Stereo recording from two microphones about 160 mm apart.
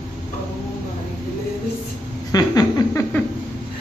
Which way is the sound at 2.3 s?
25° left (ahead or behind).